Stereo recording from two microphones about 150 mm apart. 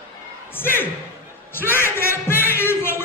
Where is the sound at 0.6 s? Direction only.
15° left (ahead or behind).